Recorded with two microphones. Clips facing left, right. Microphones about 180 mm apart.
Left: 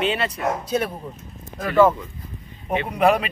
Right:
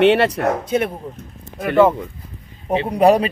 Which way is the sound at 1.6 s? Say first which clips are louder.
Right 2 dB; 25° right (ahead or behind).